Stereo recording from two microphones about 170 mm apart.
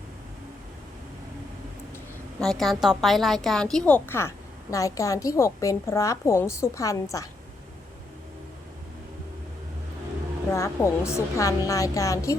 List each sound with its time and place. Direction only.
2.4 s a woman's voice: centre (ahead or behind); by 7.3 s 20° left (ahead or behind)
10.5 s a woman's voice: 15° left (ahead or behind)